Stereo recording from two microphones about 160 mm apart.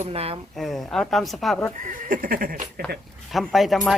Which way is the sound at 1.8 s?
55° right (ahead or behind).